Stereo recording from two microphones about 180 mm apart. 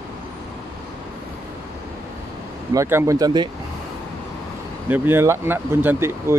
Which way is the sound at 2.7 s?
15° right (ahead or behind).